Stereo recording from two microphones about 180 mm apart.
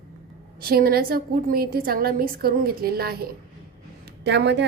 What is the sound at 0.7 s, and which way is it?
A woman's voice, 55° right (ahead or behind).